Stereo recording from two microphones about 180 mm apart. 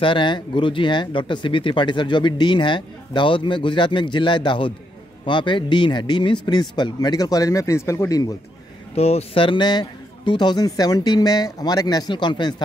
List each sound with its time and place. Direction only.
0.0 s speech: 25° left (ahead or behind)
8.9 s speech: 35° left (ahead or behind)